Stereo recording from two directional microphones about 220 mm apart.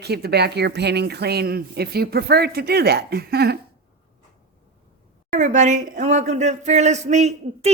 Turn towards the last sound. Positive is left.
turn(degrees=-30)  # may be behind; listen again after turning